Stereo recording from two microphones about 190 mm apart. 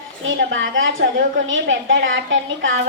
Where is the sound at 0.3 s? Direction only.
80° right.